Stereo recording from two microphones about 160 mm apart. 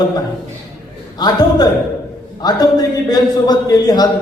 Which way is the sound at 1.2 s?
25° left (ahead or behind).